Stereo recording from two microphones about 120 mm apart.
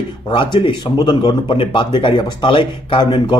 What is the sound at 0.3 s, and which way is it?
Speech, 45° left (ahead or behind).